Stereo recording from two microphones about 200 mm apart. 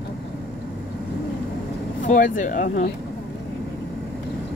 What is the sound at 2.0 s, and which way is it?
Speech, 40° left (ahead or behind).